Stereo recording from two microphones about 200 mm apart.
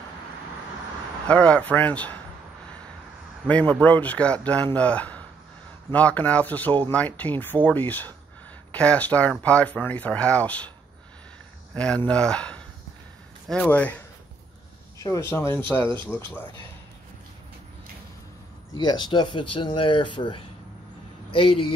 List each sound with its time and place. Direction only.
1.3 s speech: 5° left (ahead or behind)
3.4 s speech: 5° left (ahead or behind)
11.7 s speech: 5° left (ahead or behind)
15.0 s speech: 10° left (ahead or behind)
18.8 s speech: 20° left (ahead or behind)